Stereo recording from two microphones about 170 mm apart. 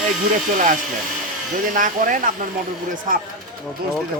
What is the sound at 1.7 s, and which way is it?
A woman's voice, 50° right (ahead or behind).